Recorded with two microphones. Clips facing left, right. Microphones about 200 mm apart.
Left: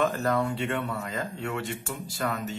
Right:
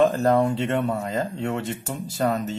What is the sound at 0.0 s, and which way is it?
Speech, 35° right (ahead or behind).